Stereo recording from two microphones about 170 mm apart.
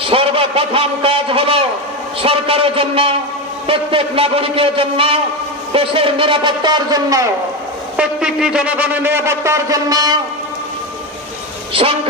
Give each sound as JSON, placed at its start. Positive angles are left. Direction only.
{"t": 0.0, "sound": "a sound", "side_deg": -35}
{"t": 3.7, "sound": "a man's voice", "side_deg": -30}
{"t": 7.9, "sound": "a man's voice", "side_deg": -5}
{"t": 11.7, "sound": "a man's voice", "side_deg": -35}